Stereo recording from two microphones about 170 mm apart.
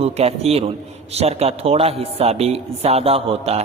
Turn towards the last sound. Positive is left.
turn(degrees=-35)  # may be behind; listen again after turning